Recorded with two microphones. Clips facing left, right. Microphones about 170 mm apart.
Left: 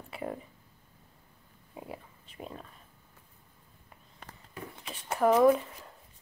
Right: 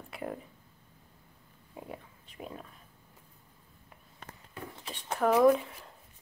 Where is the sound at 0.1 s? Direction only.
Centre (ahead or behind).